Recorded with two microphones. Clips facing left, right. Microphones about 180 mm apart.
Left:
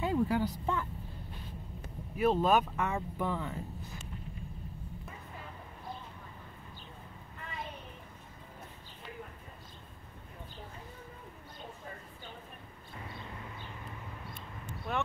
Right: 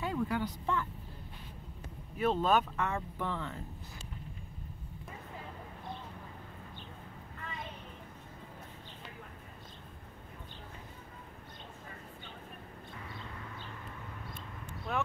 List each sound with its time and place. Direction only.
0.0 s speech: 30° left (ahead or behind)
2.1 s speech: 10° left (ahead or behind)
14.9 s a sound: centre (ahead or behind)